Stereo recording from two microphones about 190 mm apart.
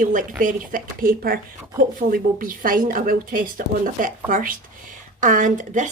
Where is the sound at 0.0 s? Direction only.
45° right (ahead or behind).